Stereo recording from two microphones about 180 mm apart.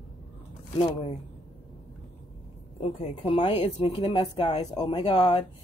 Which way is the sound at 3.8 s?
25° left (ahead or behind).